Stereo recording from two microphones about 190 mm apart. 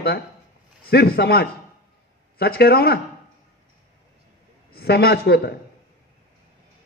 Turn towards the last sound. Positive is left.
turn(degrees=55)  # may be behind; listen again after turning